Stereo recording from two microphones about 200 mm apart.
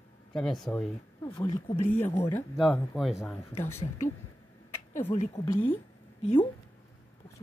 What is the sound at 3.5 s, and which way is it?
Speech, 15° left (ahead or behind).